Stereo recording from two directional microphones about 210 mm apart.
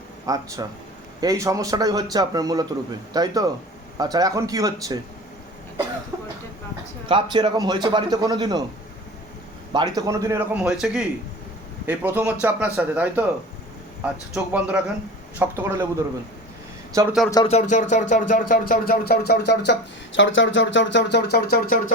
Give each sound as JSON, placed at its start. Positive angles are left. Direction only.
{"t": 0.3, "sound": "a man's voice", "side_deg": -15}
{"t": 6.1, "sound": "a sound", "side_deg": -10}
{"t": 7.1, "sound": "a man's voice", "side_deg": -25}
{"t": 9.7, "sound": "a man's voice", "side_deg": -20}
{"t": 16.9, "sound": "a man's voice", "side_deg": -15}
{"t": 17.3, "sound": "a sound", "side_deg": 25}
{"t": 19.7, "sound": "speech", "side_deg": 55}